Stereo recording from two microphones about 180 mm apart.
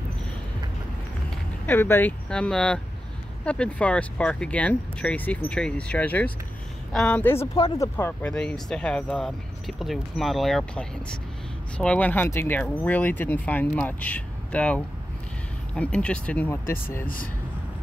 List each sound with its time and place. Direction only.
1.7 s speech: 10° left (ahead or behind)
7.5 s speech: 25° left (ahead or behind)
7.9 s speech: 10° left (ahead or behind)